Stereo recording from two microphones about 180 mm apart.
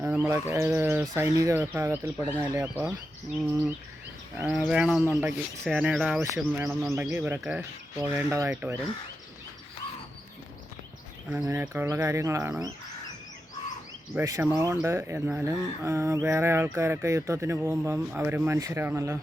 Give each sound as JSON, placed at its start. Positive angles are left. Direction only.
{"t": 0.0, "sound": "speech", "side_deg": -10}
{"t": 4.4, "sound": "speech", "side_deg": -5}
{"t": 6.2, "sound": "speech", "side_deg": -15}
{"t": 11.4, "sound": "speech", "side_deg": -15}
{"t": 14.2, "sound": "speech", "side_deg": -15}